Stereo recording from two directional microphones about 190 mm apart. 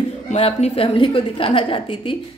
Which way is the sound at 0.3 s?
35° left (ahead or behind).